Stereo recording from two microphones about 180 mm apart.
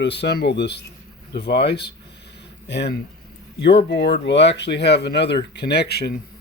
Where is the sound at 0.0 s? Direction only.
70° left (ahead or behind).